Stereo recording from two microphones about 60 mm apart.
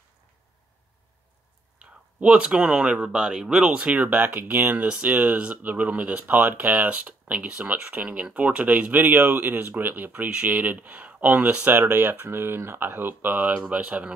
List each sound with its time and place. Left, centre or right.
1.8 s speech: centre
3.9 s speech: right
4.8 s speech: centre
5.1 s speech: right
13.5 s speech: centre